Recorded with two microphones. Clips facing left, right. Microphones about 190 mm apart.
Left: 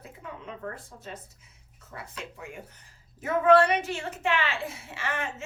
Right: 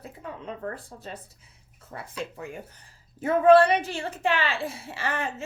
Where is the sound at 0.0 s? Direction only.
35° right (ahead or behind).